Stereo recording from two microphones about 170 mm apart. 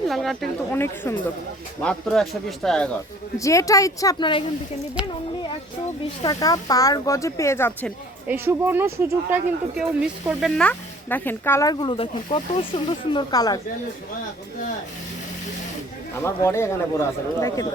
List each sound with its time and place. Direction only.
0.1 s speech: centre (ahead or behind)
0.7 s speech: 15° left (ahead or behind)
3.3 s speech: 20° left (ahead or behind)
6.2 s speech: 20° left (ahead or behind)
8.3 s speech: 10° right (ahead or behind)
10.2 s speech: centre (ahead or behind); by 13.6 s 25° left (ahead or behind)
16.2 s speech: 15° left (ahead or behind)